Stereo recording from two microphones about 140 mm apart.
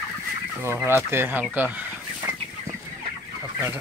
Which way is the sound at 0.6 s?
15° right (ahead or behind).